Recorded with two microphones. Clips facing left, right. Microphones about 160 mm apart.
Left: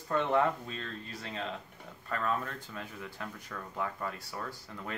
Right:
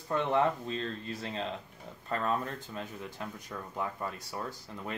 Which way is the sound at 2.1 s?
25° right (ahead or behind).